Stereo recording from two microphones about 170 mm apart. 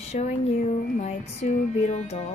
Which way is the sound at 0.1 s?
40° left (ahead or behind).